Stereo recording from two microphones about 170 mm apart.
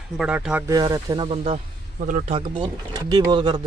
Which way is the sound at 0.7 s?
20° right (ahead or behind).